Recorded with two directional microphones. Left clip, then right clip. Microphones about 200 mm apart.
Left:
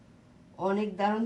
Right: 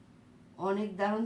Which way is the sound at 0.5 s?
45° left (ahead or behind).